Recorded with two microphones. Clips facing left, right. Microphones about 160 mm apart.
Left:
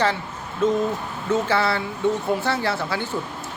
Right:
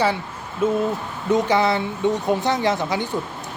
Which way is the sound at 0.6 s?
10° right (ahead or behind).